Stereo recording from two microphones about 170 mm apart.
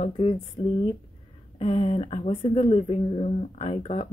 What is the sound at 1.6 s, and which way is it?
Speech, 35° left (ahead or behind).